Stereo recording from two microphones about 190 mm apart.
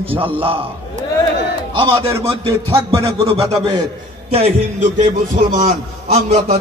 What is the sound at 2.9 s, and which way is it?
A man's voice, 15° right (ahead or behind).